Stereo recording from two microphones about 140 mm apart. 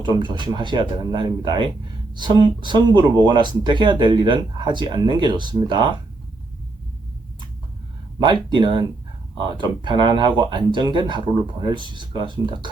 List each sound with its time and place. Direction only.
0.0 s speech: 35° right (ahead or behind)
8.2 s speech: 35° right (ahead or behind)